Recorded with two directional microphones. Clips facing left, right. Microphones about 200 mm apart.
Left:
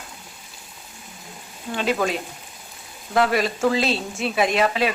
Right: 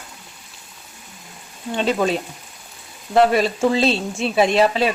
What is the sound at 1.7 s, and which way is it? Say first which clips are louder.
Speech: right 3 dB; 30° right (ahead or behind).